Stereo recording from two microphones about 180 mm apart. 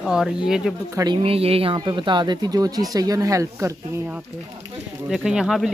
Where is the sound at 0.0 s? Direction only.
Centre (ahead or behind).